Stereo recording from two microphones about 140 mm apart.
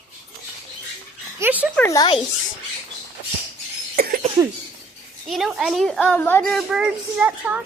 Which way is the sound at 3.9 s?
90° right.